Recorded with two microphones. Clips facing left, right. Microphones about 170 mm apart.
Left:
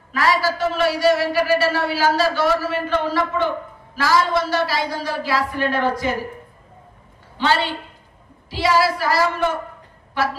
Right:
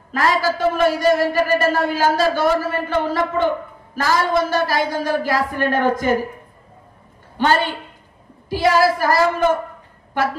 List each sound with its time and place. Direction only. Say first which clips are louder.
0.1 s a man's voice: right 1 dB; 50° right (ahead or behind)
7.3 s a man's voice: right 2 dB; 50° right (ahead or behind)